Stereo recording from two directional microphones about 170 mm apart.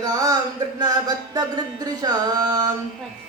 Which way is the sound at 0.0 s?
20° right (ahead or behind).